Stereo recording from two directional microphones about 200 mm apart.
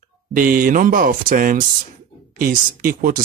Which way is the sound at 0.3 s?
45° right (ahead or behind).